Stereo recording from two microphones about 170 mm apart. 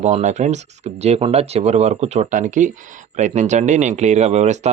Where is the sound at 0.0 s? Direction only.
45° right (ahead or behind).